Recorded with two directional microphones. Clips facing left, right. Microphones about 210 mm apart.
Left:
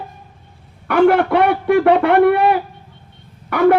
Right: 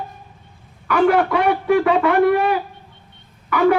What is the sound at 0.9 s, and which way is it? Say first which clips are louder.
A man's voice: left 3 dB; 60° left (ahead or behind).